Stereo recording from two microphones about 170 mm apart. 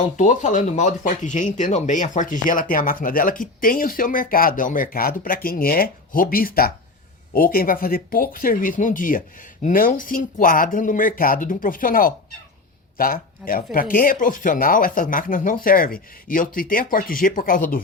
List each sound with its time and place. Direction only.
0.2 s speech: 45° left (ahead or behind)